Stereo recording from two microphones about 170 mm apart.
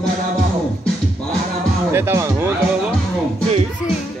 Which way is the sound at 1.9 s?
15° right (ahead or behind).